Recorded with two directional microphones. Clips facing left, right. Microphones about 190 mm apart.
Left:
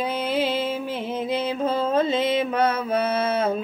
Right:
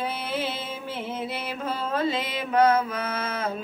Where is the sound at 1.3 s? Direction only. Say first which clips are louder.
Left 7 dB; 20° left (ahead or behind).